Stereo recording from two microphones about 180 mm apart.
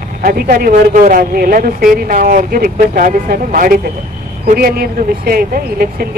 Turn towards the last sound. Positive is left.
turn(degrees=-55)  # may be behind; listen again after turning